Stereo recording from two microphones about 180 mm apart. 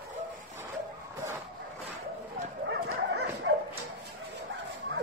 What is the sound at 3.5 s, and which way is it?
Bow-wow, 90° right.